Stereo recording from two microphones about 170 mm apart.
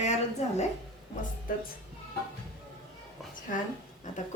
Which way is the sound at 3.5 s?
50° left (ahead or behind).